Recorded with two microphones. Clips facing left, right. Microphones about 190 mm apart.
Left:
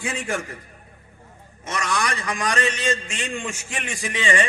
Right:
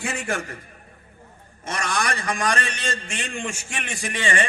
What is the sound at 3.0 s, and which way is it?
A man's voice, 55° right (ahead or behind).